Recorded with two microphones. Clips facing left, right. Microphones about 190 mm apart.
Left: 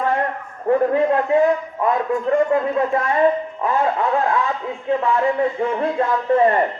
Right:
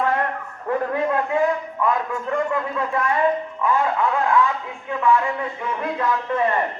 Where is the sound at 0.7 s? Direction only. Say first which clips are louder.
Left 6 dB; 30° left (ahead or behind).